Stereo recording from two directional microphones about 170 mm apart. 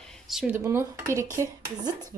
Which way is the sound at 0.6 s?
15° right (ahead or behind).